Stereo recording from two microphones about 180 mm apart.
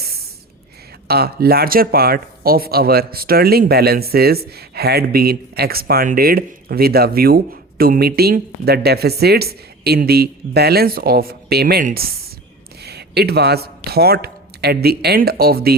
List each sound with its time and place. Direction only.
1.0 s speech: 60° right (ahead or behind)
12.8 s speech: 65° right (ahead or behind)